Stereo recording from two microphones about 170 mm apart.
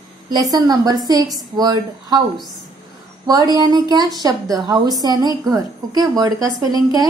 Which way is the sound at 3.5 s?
25° right (ahead or behind).